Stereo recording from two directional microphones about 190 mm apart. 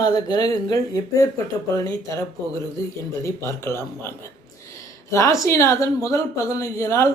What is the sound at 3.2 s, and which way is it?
Speech, 15° left (ahead or behind).